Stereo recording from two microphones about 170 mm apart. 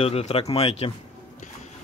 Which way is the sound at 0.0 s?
35° left (ahead or behind).